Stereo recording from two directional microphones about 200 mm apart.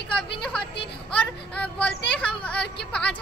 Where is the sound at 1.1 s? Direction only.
5° left (ahead or behind).